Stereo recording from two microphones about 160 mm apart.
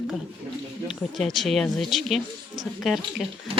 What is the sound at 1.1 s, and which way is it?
Speech, centre (ahead or behind).